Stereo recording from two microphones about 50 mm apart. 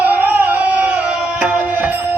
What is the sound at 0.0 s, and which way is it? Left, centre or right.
Music, right.